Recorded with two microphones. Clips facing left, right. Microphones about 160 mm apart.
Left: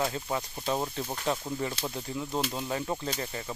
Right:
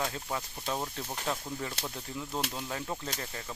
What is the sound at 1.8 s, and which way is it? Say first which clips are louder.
Speech: left 4 dB; 10° left (ahead or behind).